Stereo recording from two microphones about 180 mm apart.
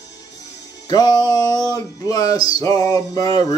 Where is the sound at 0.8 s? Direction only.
20° left (ahead or behind).